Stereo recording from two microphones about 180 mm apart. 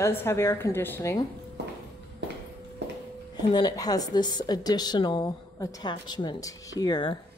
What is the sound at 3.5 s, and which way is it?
A woman's voice, 20° left (ahead or behind).